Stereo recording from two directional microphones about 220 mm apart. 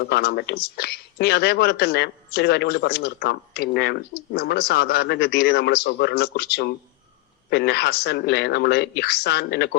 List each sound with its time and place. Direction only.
0.0 s speech: 45° left (ahead or behind)